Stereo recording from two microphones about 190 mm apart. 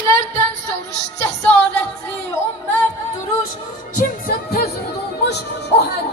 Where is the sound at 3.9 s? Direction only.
50° left (ahead or behind).